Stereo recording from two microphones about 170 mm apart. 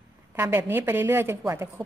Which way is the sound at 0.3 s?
15° right (ahead or behind).